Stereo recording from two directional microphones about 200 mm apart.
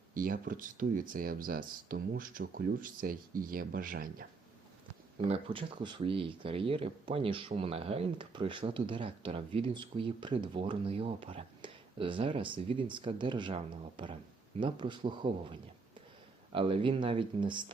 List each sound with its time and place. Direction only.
0.1 s speech: 45° right (ahead or behind)
5.3 s speech: 25° right (ahead or behind)
16.5 s speech: 25° right (ahead or behind)